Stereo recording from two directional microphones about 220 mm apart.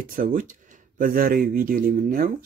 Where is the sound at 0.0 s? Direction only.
40° right (ahead or behind).